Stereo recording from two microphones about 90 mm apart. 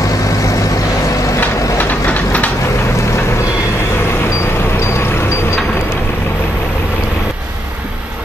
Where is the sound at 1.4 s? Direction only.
20° left (ahead or behind).